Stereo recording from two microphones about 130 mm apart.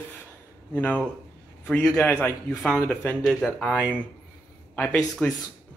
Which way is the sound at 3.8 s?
10° right (ahead or behind).